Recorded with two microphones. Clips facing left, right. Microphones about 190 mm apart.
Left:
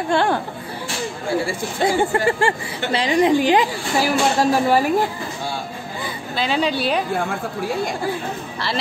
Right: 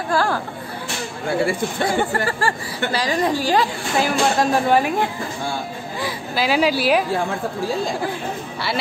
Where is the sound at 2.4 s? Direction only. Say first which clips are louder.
Left 1 dB; 25° left (ahead or behind).